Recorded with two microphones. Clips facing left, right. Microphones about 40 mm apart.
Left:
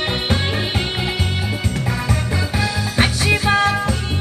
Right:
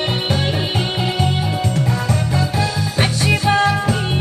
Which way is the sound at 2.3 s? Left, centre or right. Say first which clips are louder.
Right 2 dB; centre.